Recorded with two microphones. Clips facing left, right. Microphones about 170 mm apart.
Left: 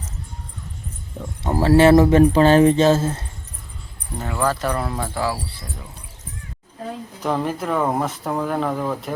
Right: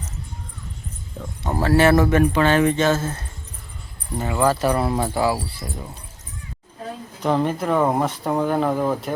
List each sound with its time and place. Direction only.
1.2 s speech: 5° left (ahead or behind)
1.6 s speech: 25° left (ahead or behind)
4.2 s speech: 10° right (ahead or behind)
7.2 s speech: centre (ahead or behind)